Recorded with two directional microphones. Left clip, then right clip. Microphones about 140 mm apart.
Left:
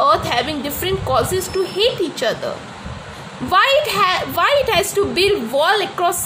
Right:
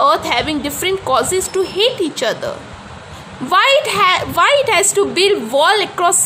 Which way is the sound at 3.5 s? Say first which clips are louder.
Right 2 dB; 25° right (ahead or behind).